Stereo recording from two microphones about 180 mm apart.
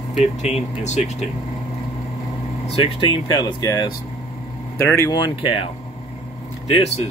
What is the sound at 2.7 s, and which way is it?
Speech, 35° left (ahead or behind).